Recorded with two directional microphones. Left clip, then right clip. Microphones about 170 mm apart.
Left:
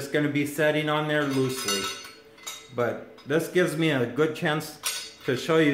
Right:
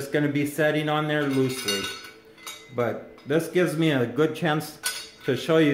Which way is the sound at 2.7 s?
20° right (ahead or behind).